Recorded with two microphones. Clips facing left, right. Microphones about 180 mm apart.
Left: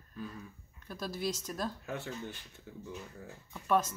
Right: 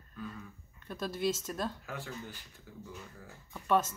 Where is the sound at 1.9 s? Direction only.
25° left (ahead or behind).